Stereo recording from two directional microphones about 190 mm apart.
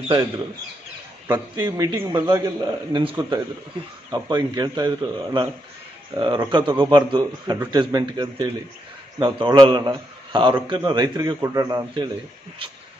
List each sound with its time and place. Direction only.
1.2 s a man's voice: 20° right (ahead or behind)